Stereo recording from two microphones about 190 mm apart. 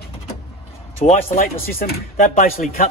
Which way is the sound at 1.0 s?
40° left (ahead or behind).